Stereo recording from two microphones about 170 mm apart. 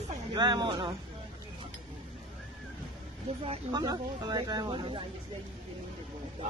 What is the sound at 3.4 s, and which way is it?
Speech, 30° right (ahead or behind).